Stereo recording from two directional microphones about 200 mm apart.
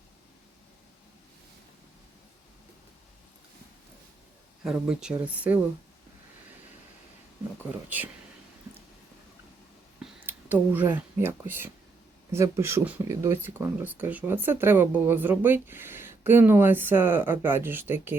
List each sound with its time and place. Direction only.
4.6 s speech: 5° right (ahead or behind)
7.6 s speech: 10° right (ahead or behind)
10.0 s speech: 10° right (ahead or behind)